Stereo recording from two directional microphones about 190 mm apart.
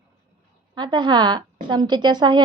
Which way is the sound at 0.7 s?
25° right (ahead or behind).